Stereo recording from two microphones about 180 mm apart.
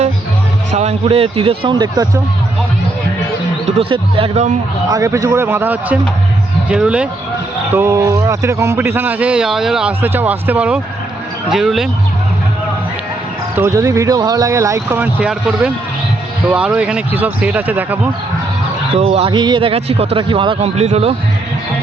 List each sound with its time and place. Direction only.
0.7 s a man's voice: 35° right (ahead or behind)
3.7 s a man's voice: 30° right (ahead or behind)
4.9 s a man's voice: 20° right (ahead or behind); by 11.9 s centre (ahead or behind)
13.6 s a man's voice: 15° right (ahead or behind)
18.9 s a man's voice: 35° right (ahead or behind)